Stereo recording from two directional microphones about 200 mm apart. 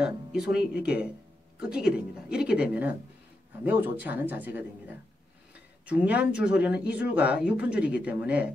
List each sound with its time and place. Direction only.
0.0 s speech: 5° right (ahead or behind)